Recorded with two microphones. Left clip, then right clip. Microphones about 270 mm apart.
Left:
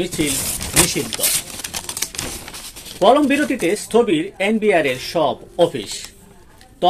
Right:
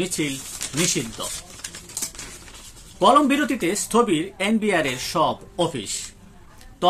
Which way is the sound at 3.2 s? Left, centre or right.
Centre.